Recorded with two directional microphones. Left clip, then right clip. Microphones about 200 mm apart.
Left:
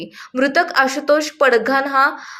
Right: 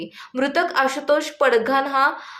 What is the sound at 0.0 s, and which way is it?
A woman's voice, 15° left (ahead or behind).